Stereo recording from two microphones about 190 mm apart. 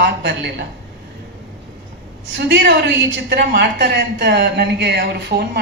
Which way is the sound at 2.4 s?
60° right (ahead or behind).